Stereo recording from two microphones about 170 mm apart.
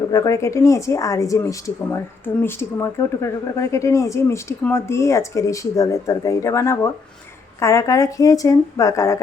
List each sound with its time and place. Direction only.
0.1 s speech: 20° left (ahead or behind)